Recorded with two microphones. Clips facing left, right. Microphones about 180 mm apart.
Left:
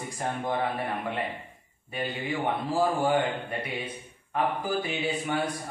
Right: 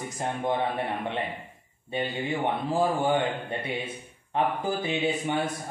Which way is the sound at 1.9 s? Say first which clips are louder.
Right 2 dB; 25° right (ahead or behind).